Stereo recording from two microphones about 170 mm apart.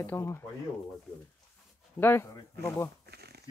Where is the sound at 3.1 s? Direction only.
70° right (ahead or behind).